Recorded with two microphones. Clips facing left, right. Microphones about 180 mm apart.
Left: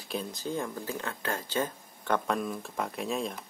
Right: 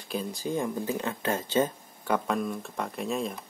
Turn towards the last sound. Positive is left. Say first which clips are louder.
# right 2 dB
turn(degrees=0)  # may be behind; listen again after turning